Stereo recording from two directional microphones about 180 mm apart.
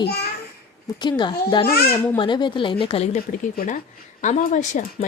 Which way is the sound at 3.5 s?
45° left (ahead or behind).